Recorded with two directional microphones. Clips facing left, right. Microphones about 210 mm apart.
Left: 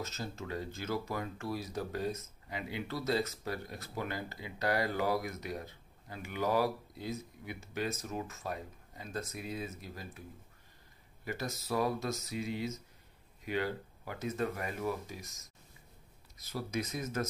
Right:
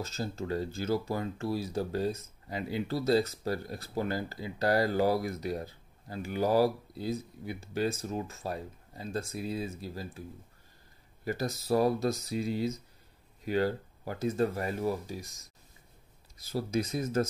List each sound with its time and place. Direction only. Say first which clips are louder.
0.0 s speech: right 5 dB; 30° right (ahead or behind)
11.2 s speech: right 7 dB; 35° right (ahead or behind)
16.4 s speech: right 6 dB; 30° right (ahead or behind)